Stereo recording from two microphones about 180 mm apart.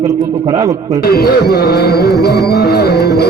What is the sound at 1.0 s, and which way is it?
Music, 60° left (ahead or behind).